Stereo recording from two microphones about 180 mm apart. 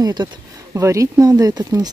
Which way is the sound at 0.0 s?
25° right (ahead or behind).